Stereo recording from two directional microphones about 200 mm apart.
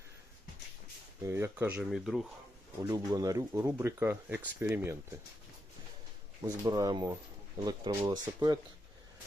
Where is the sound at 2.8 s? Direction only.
15° right (ahead or behind).